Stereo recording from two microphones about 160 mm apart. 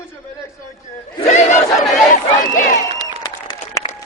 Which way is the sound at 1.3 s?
45° left (ahead or behind).